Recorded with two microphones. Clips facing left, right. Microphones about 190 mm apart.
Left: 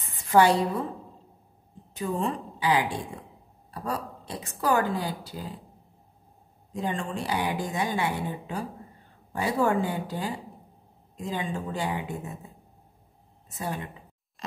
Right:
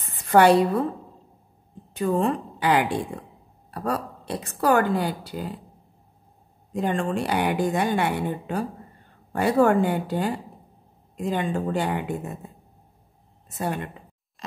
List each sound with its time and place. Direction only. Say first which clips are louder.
0.2 s a woman's voice: right 4 dB; 65° right (ahead or behind)
2.0 s a woman's voice: right 6 dB; 60° right (ahead or behind)
6.7 s a woman's voice: right 6 dB; 60° right (ahead or behind)
13.6 s a woman's voice: right 5 dB; 60° right (ahead or behind)